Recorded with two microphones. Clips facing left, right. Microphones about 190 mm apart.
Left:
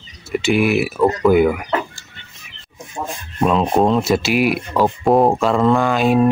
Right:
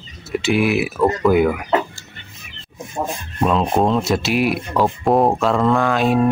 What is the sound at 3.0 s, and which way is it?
Speech, 20° right (ahead or behind).